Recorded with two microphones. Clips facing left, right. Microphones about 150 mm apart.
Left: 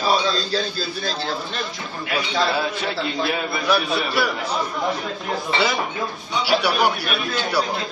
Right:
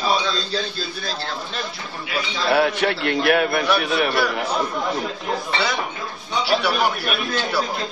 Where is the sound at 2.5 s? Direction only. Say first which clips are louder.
Right 5 dB; 70° right (ahead or behind).